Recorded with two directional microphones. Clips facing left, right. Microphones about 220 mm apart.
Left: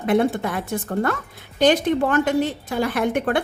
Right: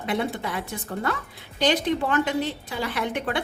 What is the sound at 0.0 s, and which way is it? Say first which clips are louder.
A woman's voice: left 8 dB; 50° left (ahead or behind).